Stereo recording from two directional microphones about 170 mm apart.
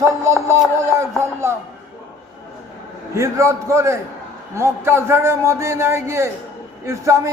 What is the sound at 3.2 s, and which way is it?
A man's voice, 15° right (ahead or behind).